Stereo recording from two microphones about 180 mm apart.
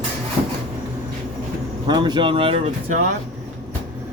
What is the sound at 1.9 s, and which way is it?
Speech, 25° right (ahead or behind).